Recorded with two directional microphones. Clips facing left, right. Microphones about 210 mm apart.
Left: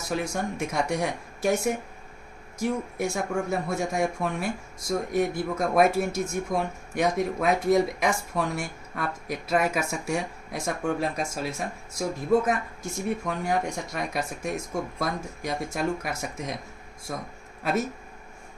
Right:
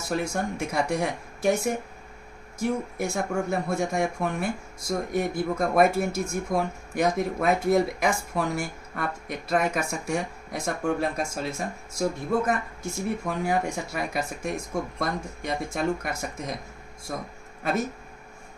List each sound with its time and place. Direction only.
0.0 s speech: centre (ahead or behind)